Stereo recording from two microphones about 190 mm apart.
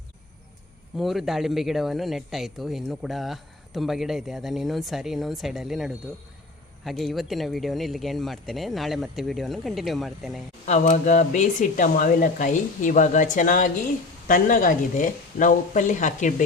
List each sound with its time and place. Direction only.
0.9 s speech: centre (ahead or behind)
10.7 s speech: 40° left (ahead or behind)